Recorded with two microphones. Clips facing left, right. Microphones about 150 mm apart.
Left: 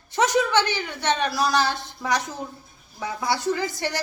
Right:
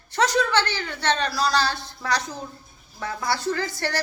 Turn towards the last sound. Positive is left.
turn(degrees=20)  # may be behind; listen again after turning